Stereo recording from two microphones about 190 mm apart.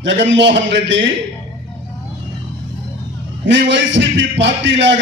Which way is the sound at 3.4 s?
75° right (ahead or behind).